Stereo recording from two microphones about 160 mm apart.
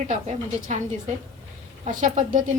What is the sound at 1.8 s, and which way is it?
Speech, 55° right (ahead or behind).